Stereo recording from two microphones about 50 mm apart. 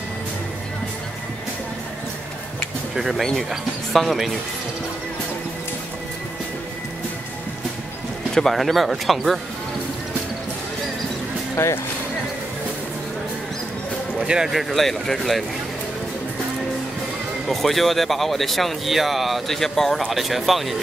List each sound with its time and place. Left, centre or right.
3.2 s speech: centre
8.4 s speech: centre
11.5 s speech: left
14.2 s speech: centre
14.5 s speech: centre
17.5 s speech: centre
20.2 s speech: centre